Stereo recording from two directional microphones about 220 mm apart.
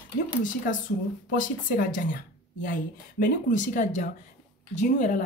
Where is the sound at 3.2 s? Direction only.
35° left (ahead or behind).